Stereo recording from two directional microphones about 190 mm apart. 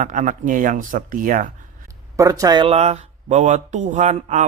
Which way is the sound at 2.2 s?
15° right (ahead or behind).